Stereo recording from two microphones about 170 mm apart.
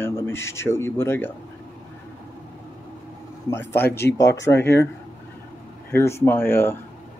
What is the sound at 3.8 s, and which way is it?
Speech, 70° left (ahead or behind).